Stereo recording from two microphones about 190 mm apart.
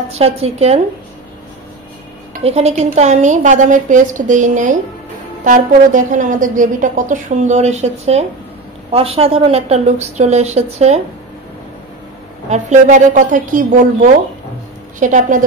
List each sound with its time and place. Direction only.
0.1 s a woman's voice: 35° right (ahead or behind)
2.4 s a woman's voice: 35° right (ahead or behind)
12.4 s a woman's voice: 40° right (ahead or behind)
15.0 s a woman's voice: 40° right (ahead or behind)